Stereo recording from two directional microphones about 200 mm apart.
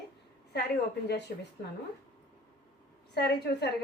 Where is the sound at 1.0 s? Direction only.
60° left (ahead or behind).